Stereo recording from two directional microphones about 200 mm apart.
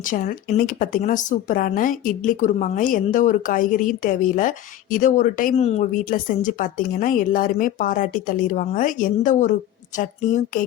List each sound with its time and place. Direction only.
0.0 s speech: 40° left (ahead or behind)